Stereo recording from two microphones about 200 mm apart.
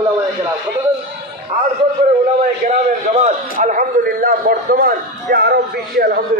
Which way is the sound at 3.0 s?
35° right (ahead or behind).